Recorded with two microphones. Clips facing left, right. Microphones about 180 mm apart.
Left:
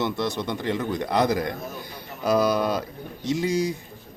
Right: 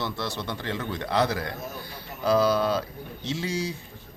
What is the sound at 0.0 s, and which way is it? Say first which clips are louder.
Speech: left 5 dB; 15° left (ahead or behind).